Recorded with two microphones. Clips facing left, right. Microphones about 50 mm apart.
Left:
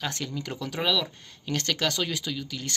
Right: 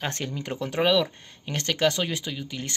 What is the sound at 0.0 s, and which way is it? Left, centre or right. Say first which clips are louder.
Speech: right 1 dB; right.